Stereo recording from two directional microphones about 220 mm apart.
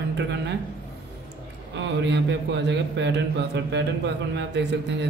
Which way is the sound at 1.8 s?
55° right (ahead or behind).